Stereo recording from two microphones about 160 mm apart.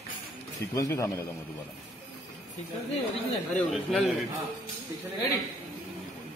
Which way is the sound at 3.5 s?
5° left (ahead or behind).